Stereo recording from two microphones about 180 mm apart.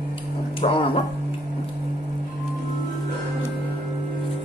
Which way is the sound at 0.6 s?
30° left (ahead or behind).